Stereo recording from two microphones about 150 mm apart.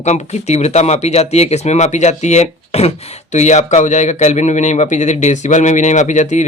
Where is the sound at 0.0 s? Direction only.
50° left (ahead or behind).